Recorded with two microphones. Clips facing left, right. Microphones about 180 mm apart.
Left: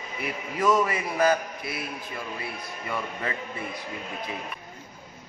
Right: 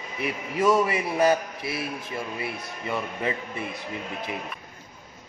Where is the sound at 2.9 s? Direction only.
20° right (ahead or behind).